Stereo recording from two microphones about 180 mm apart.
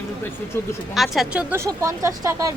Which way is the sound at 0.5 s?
15° left (ahead or behind).